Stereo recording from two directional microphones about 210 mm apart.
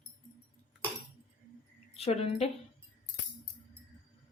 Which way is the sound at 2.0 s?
30° left (ahead or behind).